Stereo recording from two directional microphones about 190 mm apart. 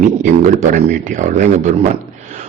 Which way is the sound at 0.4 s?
40° right (ahead or behind).